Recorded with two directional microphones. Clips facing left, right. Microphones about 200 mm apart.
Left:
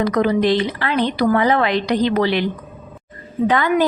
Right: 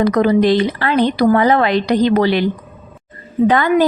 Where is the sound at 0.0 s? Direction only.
40° right (ahead or behind).